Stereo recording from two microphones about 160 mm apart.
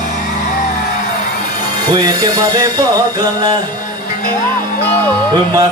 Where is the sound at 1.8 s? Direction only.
25° right (ahead or behind).